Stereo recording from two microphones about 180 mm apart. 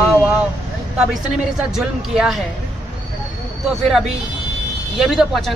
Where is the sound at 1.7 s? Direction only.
Centre (ahead or behind).